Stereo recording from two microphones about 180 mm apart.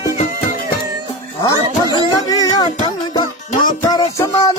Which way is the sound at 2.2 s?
20° left (ahead or behind).